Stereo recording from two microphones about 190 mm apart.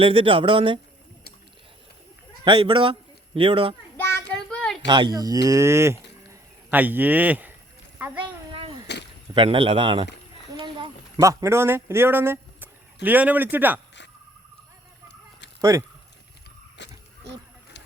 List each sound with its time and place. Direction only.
0.0 s speech: 30° right (ahead or behind)
2.4 s speech: 25° right (ahead or behind)
3.9 s child singing: 10° left (ahead or behind)
4.4 s a sound: 5° left (ahead or behind)
4.9 s a man's voice: 25° right (ahead or behind)
8.5 s a sound: 30° right (ahead or behind)
9.3 s a man's voice: 25° right (ahead or behind); by 13.8 s 10° right (ahead or behind)
15.7 s a man's voice: 15° right (ahead or behind)
16.8 s vehicle: 70° left (ahead or behind)